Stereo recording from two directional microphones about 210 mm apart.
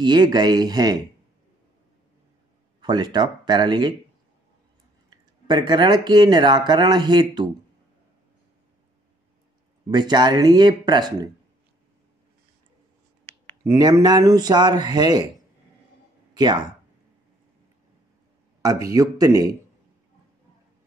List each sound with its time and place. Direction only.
0.0 s speech: 20° right (ahead or behind)
2.8 s speech: 20° right (ahead or behind)
5.5 s speech: 20° right (ahead or behind)
9.8 s speech: 20° right (ahead or behind)
13.2 s a sound: 10° left (ahead or behind)
13.7 s speech: 15° right (ahead or behind)
18.6 s speech: 15° right (ahead or behind)